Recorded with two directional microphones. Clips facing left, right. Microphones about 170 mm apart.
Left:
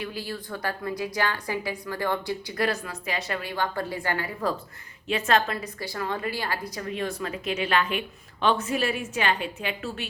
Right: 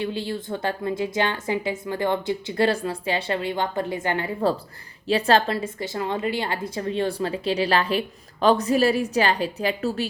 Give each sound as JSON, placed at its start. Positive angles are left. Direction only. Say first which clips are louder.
{"t": 0.0, "sound": "a woman's voice", "louder": "right 6 dB", "side_deg": -25}